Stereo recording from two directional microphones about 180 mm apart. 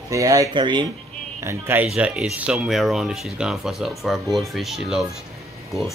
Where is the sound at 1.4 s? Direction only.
15° right (ahead or behind).